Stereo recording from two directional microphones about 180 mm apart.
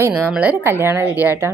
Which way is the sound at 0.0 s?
10° right (ahead or behind).